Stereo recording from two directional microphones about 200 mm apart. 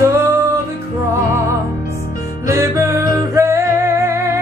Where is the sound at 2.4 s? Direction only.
15° right (ahead or behind).